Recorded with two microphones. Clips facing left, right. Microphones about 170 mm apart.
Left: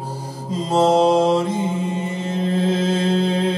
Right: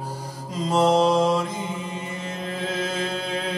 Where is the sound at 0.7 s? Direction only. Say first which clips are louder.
Left 4 dB; 25° left (ahead or behind).